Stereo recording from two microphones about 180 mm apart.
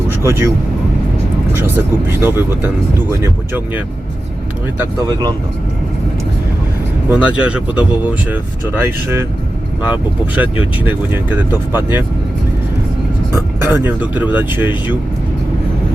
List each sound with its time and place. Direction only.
0.1 s vehicle: 15° right (ahead or behind)
1.5 s speech: 10° right (ahead or behind)
4.8 s speech: 20° right (ahead or behind)
7.1 s speech: 5° right (ahead or behind)
13.3 s speech: 15° right (ahead or behind)